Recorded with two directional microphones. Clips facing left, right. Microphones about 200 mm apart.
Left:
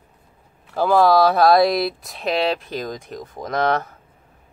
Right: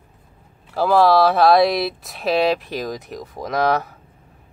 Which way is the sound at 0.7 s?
Centre (ahead or behind).